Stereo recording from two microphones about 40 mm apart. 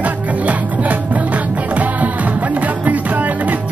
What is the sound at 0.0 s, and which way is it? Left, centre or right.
Music, right.